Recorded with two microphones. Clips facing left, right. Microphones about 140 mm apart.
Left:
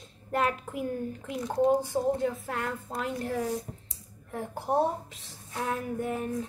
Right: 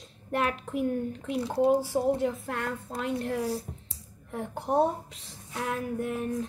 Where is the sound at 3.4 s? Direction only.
35° right (ahead or behind).